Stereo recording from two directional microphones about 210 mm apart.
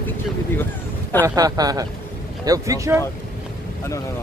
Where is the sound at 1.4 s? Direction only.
15° right (ahead or behind).